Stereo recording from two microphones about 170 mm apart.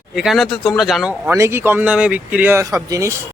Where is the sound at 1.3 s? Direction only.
15° right (ahead or behind).